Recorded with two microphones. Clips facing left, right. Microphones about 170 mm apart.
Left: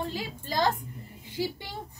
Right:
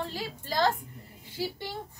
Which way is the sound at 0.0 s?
15° left (ahead or behind).